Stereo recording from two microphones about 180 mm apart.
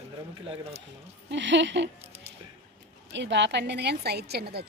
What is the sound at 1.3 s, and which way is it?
Speech, 85° right.